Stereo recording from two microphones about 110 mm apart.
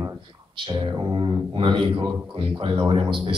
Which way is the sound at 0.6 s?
45° right (ahead or behind).